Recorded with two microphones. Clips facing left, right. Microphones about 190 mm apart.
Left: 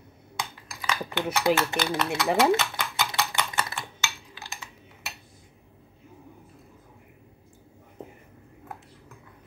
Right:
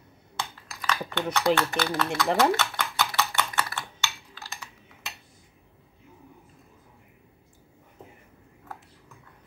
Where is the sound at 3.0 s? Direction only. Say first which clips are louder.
Right 1 dB; 20° left (ahead or behind).